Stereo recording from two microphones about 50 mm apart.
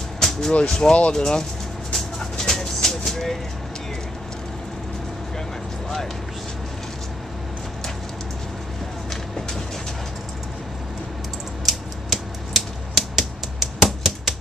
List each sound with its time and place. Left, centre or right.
0.2 s music: centre
0.5 s speech: centre
1.9 s a sound: centre
11.6 s typewriter: centre